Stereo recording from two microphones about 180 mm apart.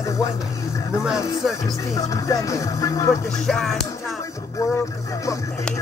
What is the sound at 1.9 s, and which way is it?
Music, 20° left (ahead or behind).